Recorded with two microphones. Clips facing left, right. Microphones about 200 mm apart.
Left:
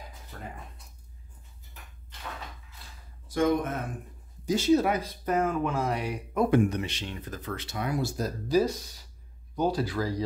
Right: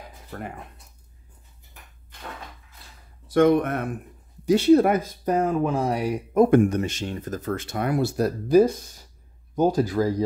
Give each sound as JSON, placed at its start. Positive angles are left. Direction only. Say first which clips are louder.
{"t": 0.3, "sound": "speech", "louder": "right 9 dB", "side_deg": -60}
{"t": 3.3, "sound": "speech", "louder": "right 7 dB", "side_deg": -65}